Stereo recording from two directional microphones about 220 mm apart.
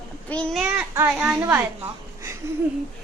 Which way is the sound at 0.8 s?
5° right (ahead or behind).